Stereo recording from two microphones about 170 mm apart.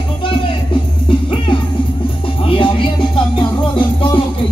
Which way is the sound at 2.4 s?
30° left (ahead or behind).